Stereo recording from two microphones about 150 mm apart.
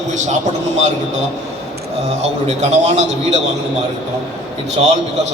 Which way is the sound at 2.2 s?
50° right (ahead or behind).